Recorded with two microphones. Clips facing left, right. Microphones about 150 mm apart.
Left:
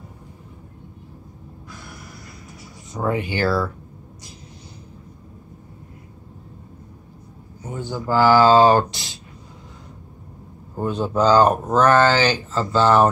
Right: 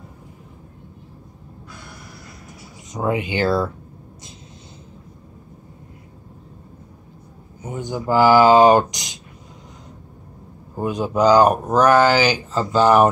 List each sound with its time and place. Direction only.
2.9 s speech: 15° right (ahead or behind)
7.6 s speech: 15° right (ahead or behind)
10.8 s speech: 10° right (ahead or behind)